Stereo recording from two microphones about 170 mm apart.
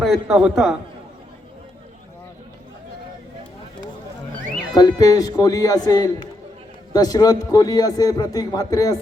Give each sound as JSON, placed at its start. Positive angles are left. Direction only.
{"t": 0.0, "sound": "a man's voice", "side_deg": 0}
{"t": 4.7, "sound": "a man's voice", "side_deg": 20}